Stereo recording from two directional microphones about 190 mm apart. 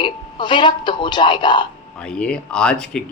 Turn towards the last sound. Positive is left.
turn(degrees=5)  # may be behind; listen again after turning